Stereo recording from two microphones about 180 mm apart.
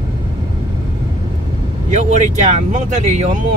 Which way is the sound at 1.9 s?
40° right (ahead or behind).